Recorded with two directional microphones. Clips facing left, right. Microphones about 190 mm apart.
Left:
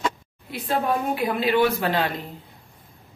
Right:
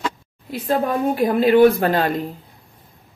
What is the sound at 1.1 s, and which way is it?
A woman's voice, 45° right (ahead or behind).